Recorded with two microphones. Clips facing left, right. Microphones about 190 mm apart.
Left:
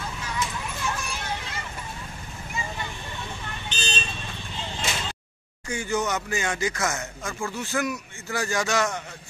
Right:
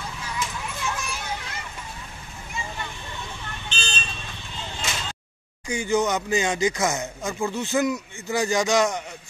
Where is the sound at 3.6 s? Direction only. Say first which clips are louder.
Left 1 dB; 20° left (ahead or behind).